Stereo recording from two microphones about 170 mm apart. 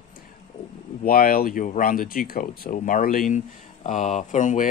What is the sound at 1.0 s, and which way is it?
Speech, 60° left (ahead or behind).